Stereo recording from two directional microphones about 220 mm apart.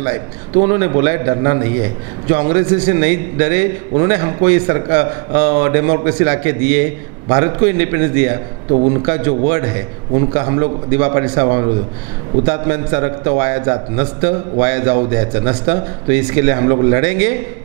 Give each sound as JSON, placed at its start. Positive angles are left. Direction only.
{"t": 0.0, "sound": "a man's voice", "side_deg": -15}
{"t": 8.7, "sound": "a man's voice", "side_deg": -30}
{"t": 9.0, "sound": "a man's voice", "side_deg": -15}